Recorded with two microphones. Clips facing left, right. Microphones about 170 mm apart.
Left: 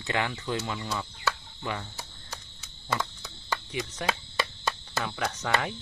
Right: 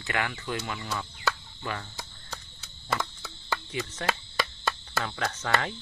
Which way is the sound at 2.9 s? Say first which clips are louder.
Even; 15° left (ahead or behind).